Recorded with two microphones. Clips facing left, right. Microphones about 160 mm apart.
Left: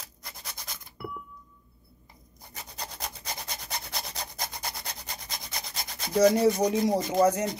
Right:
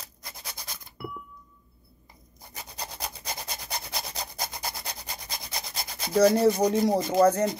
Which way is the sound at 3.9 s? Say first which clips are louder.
Right 2 dB; 5° right (ahead or behind).